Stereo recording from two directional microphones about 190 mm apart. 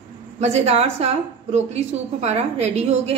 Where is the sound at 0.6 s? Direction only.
35° right (ahead or behind).